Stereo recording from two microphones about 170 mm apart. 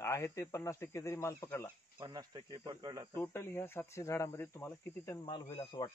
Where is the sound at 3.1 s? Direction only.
15° left (ahead or behind).